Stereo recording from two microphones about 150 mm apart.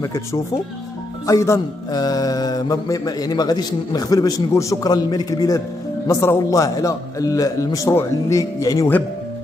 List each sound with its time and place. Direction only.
0.0 s music: 20° left (ahead or behind)